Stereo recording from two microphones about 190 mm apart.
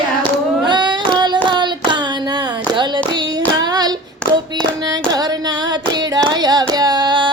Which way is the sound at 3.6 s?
20° right (ahead or behind).